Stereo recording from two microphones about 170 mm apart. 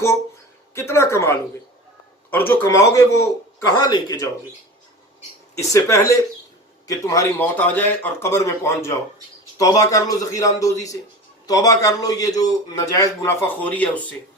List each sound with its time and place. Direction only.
0.7 s a man's voice: 15° left (ahead or behind)
5.5 s a man's voice: 15° left (ahead or behind)